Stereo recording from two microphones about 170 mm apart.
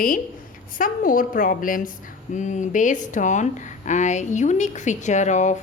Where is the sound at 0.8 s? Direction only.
55° left (ahead or behind).